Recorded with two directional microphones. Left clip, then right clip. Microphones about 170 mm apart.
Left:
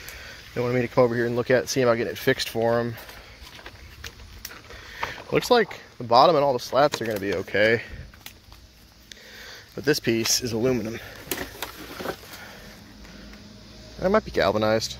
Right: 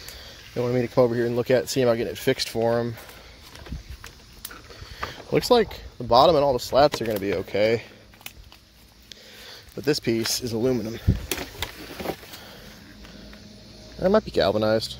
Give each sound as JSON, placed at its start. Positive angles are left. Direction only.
{"t": 0.6, "sound": "speech", "side_deg": -15}
{"t": 5.1, "sound": "speech", "side_deg": -20}
{"t": 9.1, "sound": "speech", "side_deg": -15}
{"t": 13.9, "sound": "speech", "side_deg": -30}